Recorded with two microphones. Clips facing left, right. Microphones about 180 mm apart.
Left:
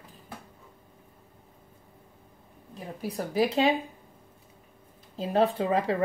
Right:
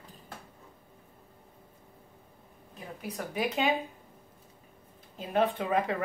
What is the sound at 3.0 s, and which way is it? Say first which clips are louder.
Speech: left 6 dB; 30° left (ahead or behind).